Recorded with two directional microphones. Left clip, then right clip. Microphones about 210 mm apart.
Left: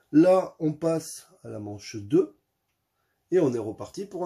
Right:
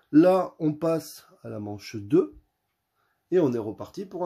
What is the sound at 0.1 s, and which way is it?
Speech, 35° right (ahead or behind).